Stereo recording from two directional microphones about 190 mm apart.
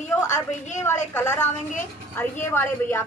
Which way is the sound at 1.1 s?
10° left (ahead or behind).